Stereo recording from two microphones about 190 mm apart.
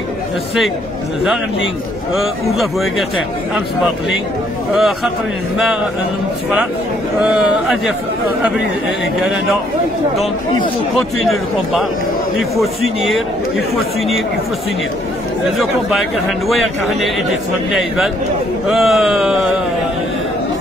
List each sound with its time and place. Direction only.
2.1 s speech: centre (ahead or behind)
4.7 s speech: centre (ahead or behind)
7.2 s speech: 5° right (ahead or behind)
15.5 s speech: centre (ahead or behind)